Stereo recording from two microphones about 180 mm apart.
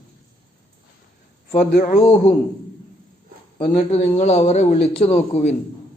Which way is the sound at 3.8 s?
40° left (ahead or behind).